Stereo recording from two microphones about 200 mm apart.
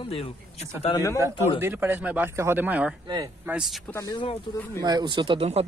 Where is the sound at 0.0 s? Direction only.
30° left (ahead or behind).